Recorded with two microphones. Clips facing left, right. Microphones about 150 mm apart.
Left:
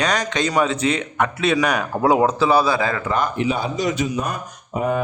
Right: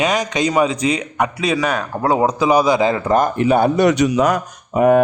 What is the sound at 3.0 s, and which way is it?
Speech, 45° right (ahead or behind).